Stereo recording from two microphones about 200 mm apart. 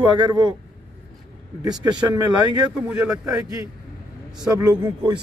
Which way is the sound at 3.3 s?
15° right (ahead or behind).